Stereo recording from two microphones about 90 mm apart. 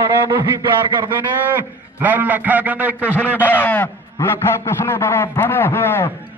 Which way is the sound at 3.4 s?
20° left (ahead or behind).